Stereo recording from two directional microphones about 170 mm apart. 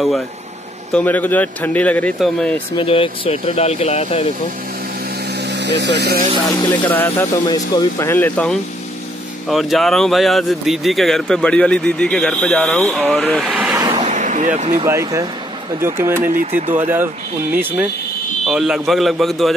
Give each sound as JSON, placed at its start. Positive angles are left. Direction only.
{"t": 0.9, "sound": "speech", "side_deg": 10}
{"t": 2.7, "sound": "speech", "side_deg": 30}
{"t": 5.3, "sound": "vehicle", "side_deg": -85}
{"t": 6.4, "sound": "speech", "side_deg": 25}
{"t": 6.9, "sound": "speech", "side_deg": 10}
{"t": 7.4, "sound": "speech", "side_deg": 25}
{"t": 13.9, "sound": "a sound", "side_deg": -45}
{"t": 14.9, "sound": "speech", "side_deg": -20}
{"t": 16.3, "sound": "speech", "side_deg": -50}
{"t": 17.6, "sound": "speech", "side_deg": -10}